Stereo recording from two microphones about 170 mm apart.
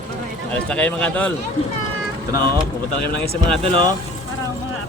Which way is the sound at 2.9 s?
65° left (ahead or behind).